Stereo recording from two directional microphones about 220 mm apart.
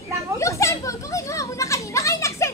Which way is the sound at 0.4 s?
15° left (ahead or behind).